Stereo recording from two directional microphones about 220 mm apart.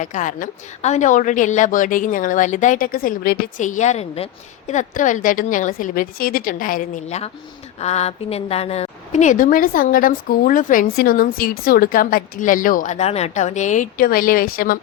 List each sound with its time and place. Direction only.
0.0 s a woman's voice: 35° left (ahead or behind)